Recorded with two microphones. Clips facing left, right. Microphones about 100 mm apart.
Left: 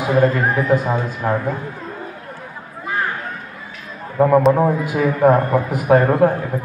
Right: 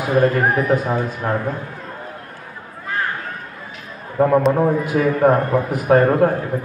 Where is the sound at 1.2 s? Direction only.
5° left (ahead or behind).